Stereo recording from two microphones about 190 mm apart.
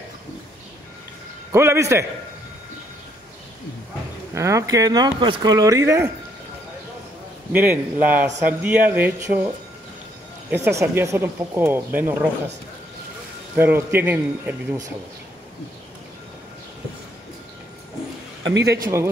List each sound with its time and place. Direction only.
1.5 s speech: 15° right (ahead or behind)
4.3 s speech: 15° right (ahead or behind)
7.5 s speech: 10° right (ahead or behind)
10.5 s speech: 15° right (ahead or behind)
13.6 s speech: 10° right (ahead or behind)
18.4 s a man's voice: 65° right (ahead or behind)